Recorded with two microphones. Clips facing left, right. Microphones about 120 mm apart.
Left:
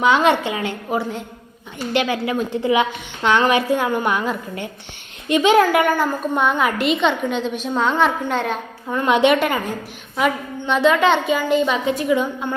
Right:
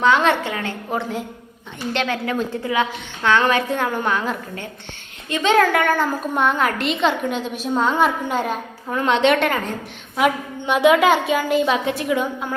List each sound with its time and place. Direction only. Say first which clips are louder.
0.0 s a woman's voice: left 1 dB; 15° left (ahead or behind)
0.9 s a woman's voice: even; 5° left (ahead or behind)
2.5 s a woman's voice: left 3 dB; 20° left (ahead or behind); by 12.5 s centre (ahead or behind)